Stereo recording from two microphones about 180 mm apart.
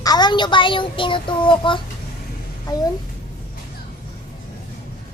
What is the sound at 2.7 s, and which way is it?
Speech, 20° left (ahead or behind).